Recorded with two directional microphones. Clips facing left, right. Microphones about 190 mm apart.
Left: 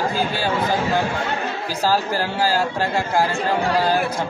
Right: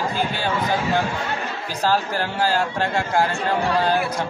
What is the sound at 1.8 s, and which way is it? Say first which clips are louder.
A man's voice: left 1 dB; 5° left (ahead or behind).